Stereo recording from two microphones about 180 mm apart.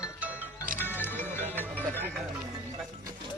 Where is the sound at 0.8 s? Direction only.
10° left (ahead or behind).